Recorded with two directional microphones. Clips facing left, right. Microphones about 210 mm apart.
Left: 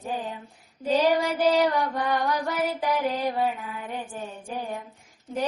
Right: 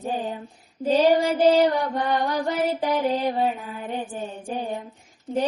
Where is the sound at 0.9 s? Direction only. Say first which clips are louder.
Right 4 dB; 25° right (ahead or behind).